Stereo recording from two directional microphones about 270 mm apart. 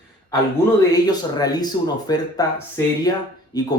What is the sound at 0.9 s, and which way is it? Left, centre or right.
Speech, centre.